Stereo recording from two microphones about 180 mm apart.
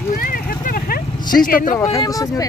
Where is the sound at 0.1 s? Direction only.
50° left (ahead or behind).